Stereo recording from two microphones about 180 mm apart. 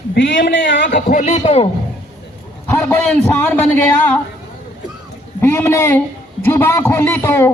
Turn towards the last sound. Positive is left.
turn(degrees=15)  # may be behind; listen again after turning